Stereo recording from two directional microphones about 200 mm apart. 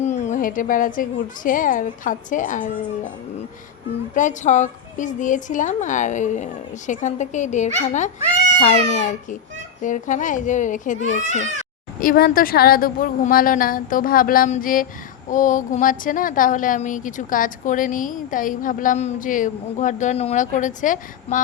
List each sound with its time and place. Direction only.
0.0 s a woman's voice: 35° left (ahead or behind)
4.1 s a woman's voice: 40° left (ahead or behind)